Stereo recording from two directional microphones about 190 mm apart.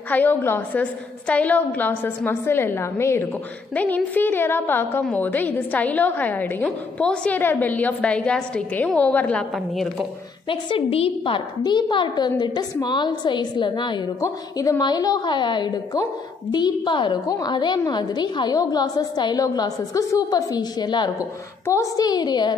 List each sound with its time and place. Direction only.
0.1 s a woman's voice: 10° left (ahead or behind)
10.5 s a woman's voice: 30° left (ahead or behind)